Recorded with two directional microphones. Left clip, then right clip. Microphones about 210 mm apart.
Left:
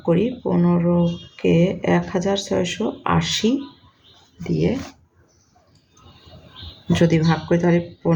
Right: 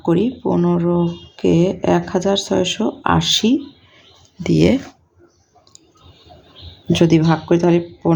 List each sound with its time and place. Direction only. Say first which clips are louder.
0.0 s speech: right 2 dB; 30° right (ahead or behind)
4.4 s speech: right 7 dB; 50° right (ahead or behind)
6.9 s speech: right 4 dB; 30° right (ahead or behind)